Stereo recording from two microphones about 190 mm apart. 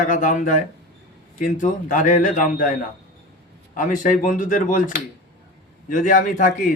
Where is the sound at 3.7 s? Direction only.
45° left (ahead or behind).